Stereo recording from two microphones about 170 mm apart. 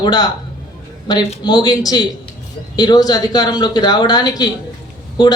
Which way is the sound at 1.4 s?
25° left (ahead or behind).